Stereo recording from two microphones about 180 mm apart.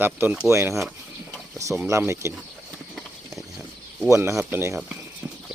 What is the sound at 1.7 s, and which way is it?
Speech, 10° right (ahead or behind).